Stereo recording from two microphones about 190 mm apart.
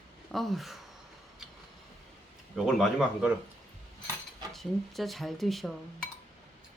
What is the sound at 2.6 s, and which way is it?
Speech, centre (ahead or behind).